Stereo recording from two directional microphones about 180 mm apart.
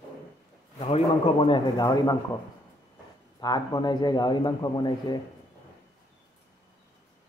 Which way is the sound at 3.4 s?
20° left (ahead or behind).